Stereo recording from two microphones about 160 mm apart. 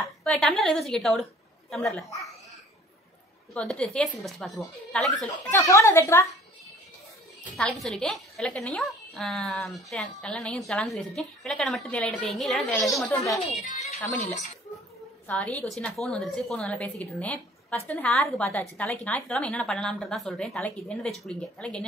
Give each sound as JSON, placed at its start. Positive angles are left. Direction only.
{"t": 0.2, "sound": "a woman's voice", "side_deg": 5}
{"t": 3.5, "sound": "a woman's voice", "side_deg": 5}
{"t": 5.5, "sound": "speech", "side_deg": 20}
{"t": 7.5, "sound": "a woman's voice", "side_deg": 5}
{"t": 13.6, "sound": "a sound", "side_deg": 45}
{"t": 14.2, "sound": "speech", "side_deg": 50}
{"t": 15.2, "sound": "a woman's voice", "side_deg": 10}